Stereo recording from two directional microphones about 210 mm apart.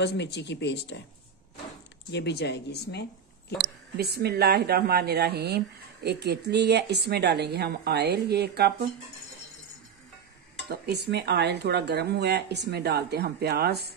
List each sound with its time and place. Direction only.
0.0 s speech: 55° left (ahead or behind)
2.0 s speech: 55° left (ahead or behind)
3.6 s speech: 50° right (ahead or behind)
10.7 s speech: 50° right (ahead or behind)